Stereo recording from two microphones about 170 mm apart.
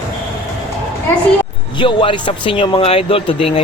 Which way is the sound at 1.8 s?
30° left (ahead or behind).